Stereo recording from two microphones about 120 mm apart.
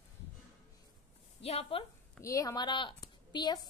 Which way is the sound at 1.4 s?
55° left (ahead or behind).